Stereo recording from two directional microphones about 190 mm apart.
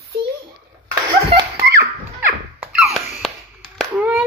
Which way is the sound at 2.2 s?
5° right (ahead or behind).